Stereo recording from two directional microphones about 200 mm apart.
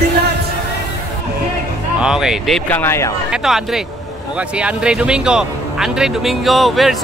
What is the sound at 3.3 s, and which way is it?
Speech, centre (ahead or behind).